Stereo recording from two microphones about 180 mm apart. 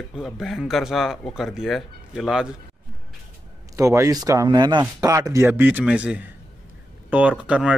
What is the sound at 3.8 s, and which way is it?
Speech, 15° right (ahead or behind).